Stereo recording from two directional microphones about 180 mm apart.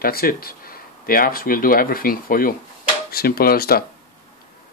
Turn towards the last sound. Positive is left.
turn(degrees=55)  # may be behind; listen again after turning